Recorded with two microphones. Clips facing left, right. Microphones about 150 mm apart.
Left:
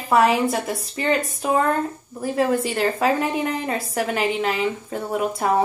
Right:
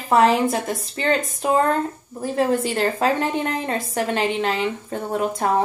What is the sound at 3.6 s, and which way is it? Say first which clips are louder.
Speech: even; 30° right (ahead or behind).